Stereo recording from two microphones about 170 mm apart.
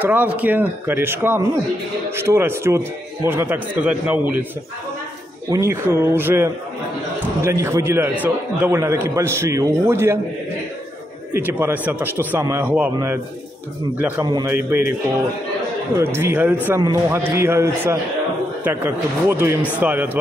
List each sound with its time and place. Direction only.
0.0 s a man's voice: 10° right (ahead or behind)
5.5 s a man's voice: 15° right (ahead or behind)
11.3 s a man's voice: 10° right (ahead or behind)
14.2 s a man's voice: 25° right (ahead or behind)
16.0 s a man's voice: 15° right (ahead or behind)